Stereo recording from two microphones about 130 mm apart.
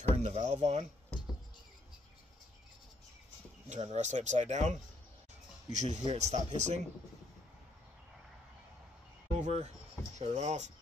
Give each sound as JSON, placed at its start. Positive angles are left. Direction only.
{"t": 0.1, "sound": "speech", "side_deg": -60}
{"t": 1.1, "sound": "music", "side_deg": 10}
{"t": 3.6, "sound": "speech", "side_deg": -60}
{"t": 9.4, "sound": "speech", "side_deg": -60}